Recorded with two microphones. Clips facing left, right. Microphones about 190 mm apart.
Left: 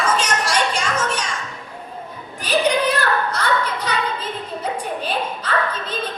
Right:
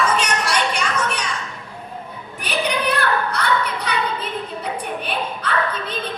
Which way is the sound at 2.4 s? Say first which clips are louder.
Left 4 dB; 60° right (ahead or behind).